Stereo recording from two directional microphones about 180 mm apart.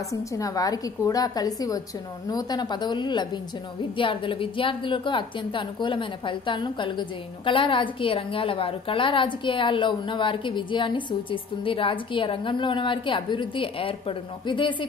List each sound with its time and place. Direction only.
0.1 s a woman's voice: 20° left (ahead or behind)